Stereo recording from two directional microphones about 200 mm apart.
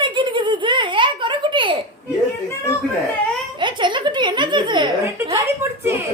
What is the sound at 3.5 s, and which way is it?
Chuckle, 25° right (ahead or behind).